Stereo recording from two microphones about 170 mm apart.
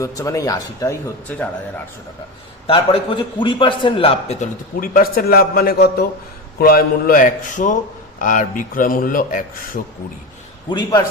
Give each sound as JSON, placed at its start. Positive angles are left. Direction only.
{"t": 0.0, "sound": "speech", "side_deg": 20}
{"t": 2.6, "sound": "a man's voice", "side_deg": 30}
{"t": 4.8, "sound": "a man's voice", "side_deg": 60}
{"t": 10.7, "sound": "speech", "side_deg": 25}